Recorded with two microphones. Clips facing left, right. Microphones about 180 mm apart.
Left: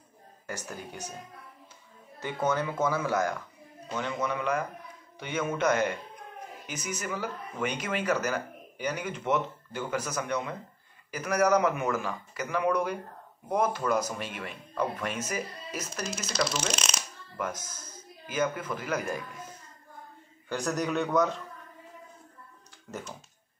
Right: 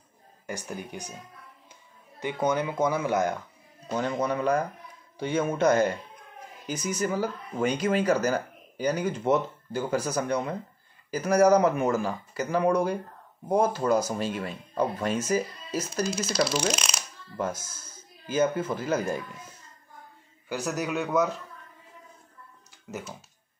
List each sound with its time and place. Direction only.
0.5 s speech: 15° right (ahead or behind)
2.1 s speech: 15° right (ahead or behind)
3.9 s speech: 35° right (ahead or behind)
16.6 s shuffling cards: centre (ahead or behind)
17.4 s speech: 30° right (ahead or behind)
20.4 s a man's voice: 5° right (ahead or behind)
22.8 s a man's voice: 5° right (ahead or behind)